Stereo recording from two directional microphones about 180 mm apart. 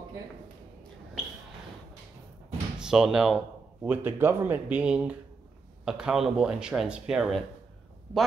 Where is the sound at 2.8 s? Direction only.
5° right (ahead or behind).